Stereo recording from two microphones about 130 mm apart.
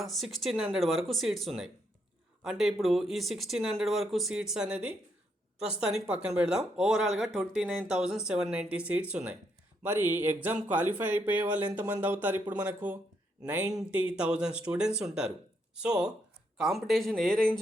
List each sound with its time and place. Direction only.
0.0 s speech: centre (ahead or behind)